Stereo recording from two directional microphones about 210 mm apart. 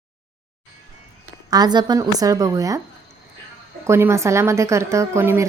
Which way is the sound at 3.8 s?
10° right (ahead or behind).